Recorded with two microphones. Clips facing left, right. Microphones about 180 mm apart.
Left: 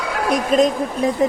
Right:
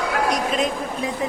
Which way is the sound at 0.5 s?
40° left (ahead or behind).